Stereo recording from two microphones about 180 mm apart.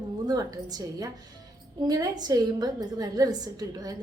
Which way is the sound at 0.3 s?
20° right (ahead or behind).